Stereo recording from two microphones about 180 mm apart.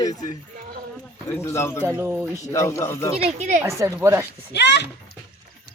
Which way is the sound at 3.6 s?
15° right (ahead or behind).